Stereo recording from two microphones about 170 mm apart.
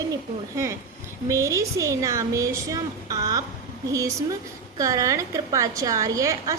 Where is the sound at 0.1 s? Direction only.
20° right (ahead or behind).